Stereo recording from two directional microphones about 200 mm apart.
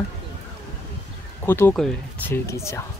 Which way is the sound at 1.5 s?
10° left (ahead or behind).